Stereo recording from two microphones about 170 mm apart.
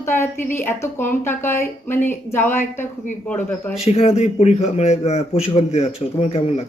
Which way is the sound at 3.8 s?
35° left (ahead or behind).